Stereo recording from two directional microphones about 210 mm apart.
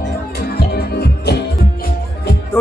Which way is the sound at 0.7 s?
50° left (ahead or behind).